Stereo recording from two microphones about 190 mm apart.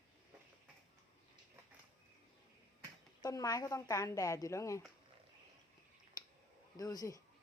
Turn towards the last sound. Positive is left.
turn(degrees=20)  # may be behind; listen again after turning